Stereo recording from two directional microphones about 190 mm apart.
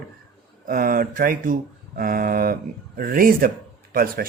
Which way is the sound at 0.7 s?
50° right (ahead or behind).